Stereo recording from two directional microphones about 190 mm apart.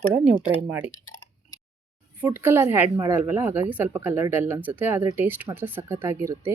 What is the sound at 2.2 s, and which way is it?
A woman's voice, 10° right (ahead or behind).